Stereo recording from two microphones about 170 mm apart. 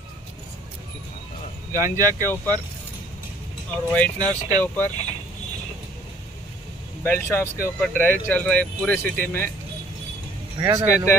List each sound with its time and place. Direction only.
1.7 s speech: 15° right (ahead or behind)
2.2 s speech: 10° left (ahead or behind)
3.9 s speech: 10° left (ahead or behind)
7.0 s speech: 15° left (ahead or behind)
10.6 s speech: 15° right (ahead or behind)